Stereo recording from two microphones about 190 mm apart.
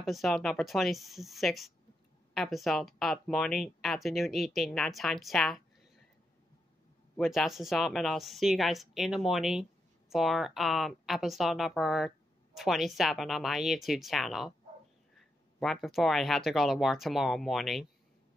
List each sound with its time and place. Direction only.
0.0 s speech: centre (ahead or behind)
7.2 s speech: centre (ahead or behind)